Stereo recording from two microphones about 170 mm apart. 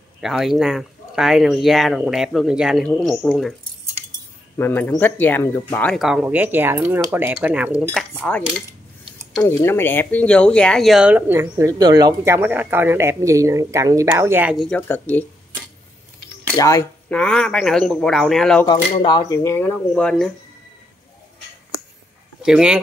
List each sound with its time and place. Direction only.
0.2 s speech: centre (ahead or behind)
4.6 s speech: 10° left (ahead or behind)
5.9 s speech: centre (ahead or behind)
8.2 s speech: 10° left (ahead or behind)
14.7 s speech: 10° left (ahead or behind)
16.5 s speech: 20° left (ahead or behind)
17.1 s speech: 5° left (ahead or behind)
18.7 s speech: 25° left (ahead or behind); by 20.2 s 5° left (ahead or behind)
22.4 s speech: 5° right (ahead or behind)